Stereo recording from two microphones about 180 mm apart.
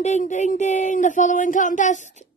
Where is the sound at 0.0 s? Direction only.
40° left (ahead or behind).